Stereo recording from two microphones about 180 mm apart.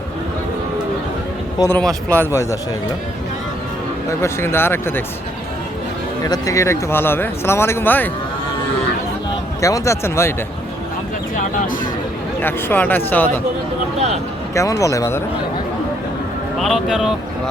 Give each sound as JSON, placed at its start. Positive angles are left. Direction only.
{"t": 1.5, "sound": "speech", "side_deg": 15}
{"t": 4.2, "sound": "speech", "side_deg": 15}
{"t": 6.2, "sound": "speech", "side_deg": 20}
{"t": 9.6, "sound": "speech", "side_deg": 15}
{"t": 11.3, "sound": "speech", "side_deg": 50}
{"t": 12.4, "sound": "speech", "side_deg": 10}
{"t": 14.5, "sound": "speech", "side_deg": 15}
{"t": 16.6, "sound": "speech", "side_deg": 0}